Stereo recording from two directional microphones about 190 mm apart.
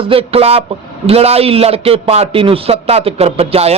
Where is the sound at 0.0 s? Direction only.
30° right (ahead or behind).